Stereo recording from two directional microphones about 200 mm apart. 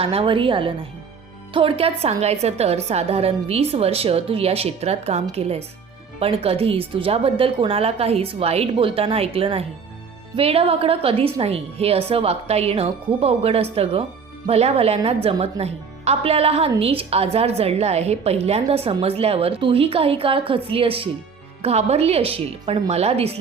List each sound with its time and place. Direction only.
0.0 s a woman's voice: 30° right (ahead or behind)